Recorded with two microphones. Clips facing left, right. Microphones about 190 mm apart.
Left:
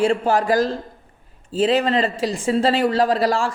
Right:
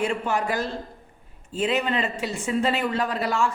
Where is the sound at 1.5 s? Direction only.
35° left (ahead or behind).